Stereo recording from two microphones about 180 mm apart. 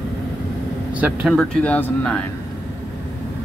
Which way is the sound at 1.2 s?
5° left (ahead or behind).